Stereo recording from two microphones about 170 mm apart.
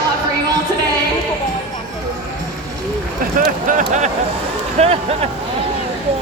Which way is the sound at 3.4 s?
50° right (ahead or behind).